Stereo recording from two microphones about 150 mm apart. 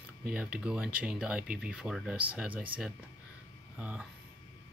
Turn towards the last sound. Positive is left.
turn(degrees=-10)  # may be behind; listen again after turning